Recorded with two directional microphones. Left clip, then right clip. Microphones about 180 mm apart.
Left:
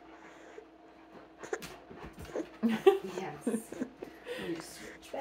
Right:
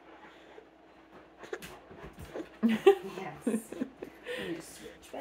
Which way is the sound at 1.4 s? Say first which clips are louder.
Left 3 dB; 25° left (ahead or behind).